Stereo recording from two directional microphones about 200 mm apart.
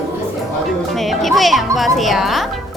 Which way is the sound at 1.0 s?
Centre (ahead or behind).